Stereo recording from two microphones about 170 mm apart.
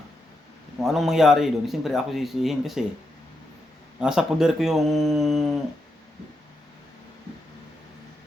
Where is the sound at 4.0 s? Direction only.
5° right (ahead or behind).